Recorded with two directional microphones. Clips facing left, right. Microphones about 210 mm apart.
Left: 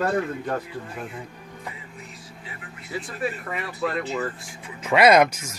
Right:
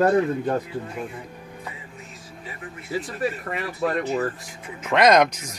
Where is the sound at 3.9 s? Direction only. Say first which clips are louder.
Right 5 dB; 40° right (ahead or behind).